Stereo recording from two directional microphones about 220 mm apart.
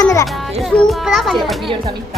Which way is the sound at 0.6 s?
Centre (ahead or behind).